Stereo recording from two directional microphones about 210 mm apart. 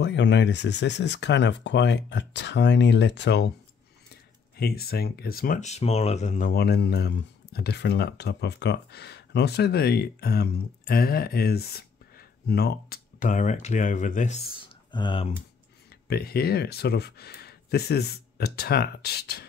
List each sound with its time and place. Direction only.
0.0 s speech: 55° left (ahead or behind)
4.6 s speech: 50° left (ahead or behind)
14.9 s speech: 20° left (ahead or behind)
16.1 s speech: 45° left (ahead or behind)